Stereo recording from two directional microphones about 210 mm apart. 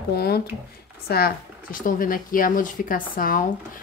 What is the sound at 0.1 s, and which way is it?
Speech, 50° left (ahead or behind).